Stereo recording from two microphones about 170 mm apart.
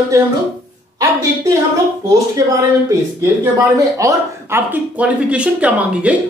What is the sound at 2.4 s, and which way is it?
Speech, 20° right (ahead or behind).